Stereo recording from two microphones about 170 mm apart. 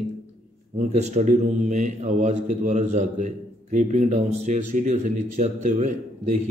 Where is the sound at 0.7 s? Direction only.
45° right (ahead or behind).